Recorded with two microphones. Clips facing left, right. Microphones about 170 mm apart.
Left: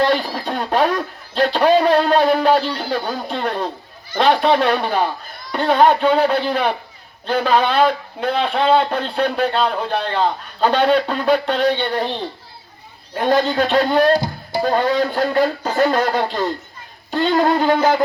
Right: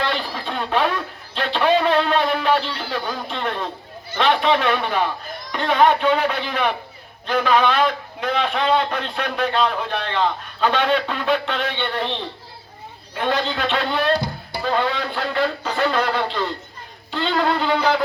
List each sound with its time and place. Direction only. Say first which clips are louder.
0.0 s a man's voice: left 7 dB; 45° left (ahead or behind)
13.1 s a man's voice: left 6 dB; 40° left (ahead or behind)